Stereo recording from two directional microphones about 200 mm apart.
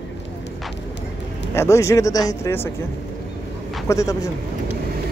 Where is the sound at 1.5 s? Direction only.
15° left (ahead or behind).